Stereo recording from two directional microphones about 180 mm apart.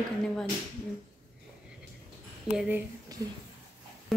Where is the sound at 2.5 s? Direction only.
5° right (ahead or behind).